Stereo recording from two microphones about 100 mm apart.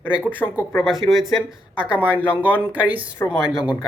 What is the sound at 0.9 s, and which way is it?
Speech, centre (ahead or behind).